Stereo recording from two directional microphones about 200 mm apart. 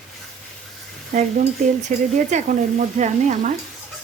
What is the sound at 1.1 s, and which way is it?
Speech, 40° right (ahead or behind).